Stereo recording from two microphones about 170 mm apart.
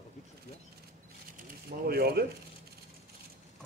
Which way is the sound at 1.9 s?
65° right (ahead or behind).